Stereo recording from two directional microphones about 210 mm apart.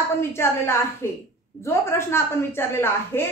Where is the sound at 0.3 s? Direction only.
10° left (ahead or behind).